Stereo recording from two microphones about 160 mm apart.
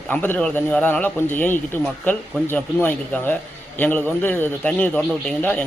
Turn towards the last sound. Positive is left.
turn(degrees=10)  # may be behind; listen again after turning